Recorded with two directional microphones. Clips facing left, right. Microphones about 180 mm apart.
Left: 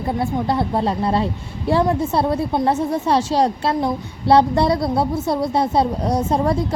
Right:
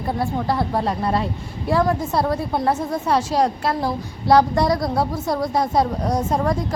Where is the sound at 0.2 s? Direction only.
25° left (ahead or behind).